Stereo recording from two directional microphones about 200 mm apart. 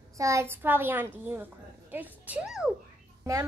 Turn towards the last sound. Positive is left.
turn(degrees=-15)  # may be behind; listen again after turning